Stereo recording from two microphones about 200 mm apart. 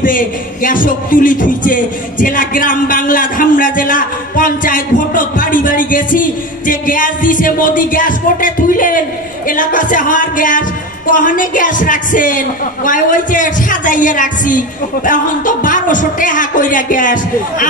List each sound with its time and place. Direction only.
0.0 s a man's voice: 45° left (ahead or behind)